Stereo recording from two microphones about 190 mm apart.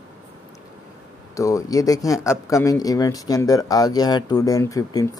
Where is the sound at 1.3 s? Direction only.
15° left (ahead or behind).